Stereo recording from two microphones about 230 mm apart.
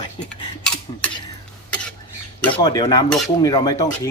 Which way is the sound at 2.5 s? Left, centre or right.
Centre.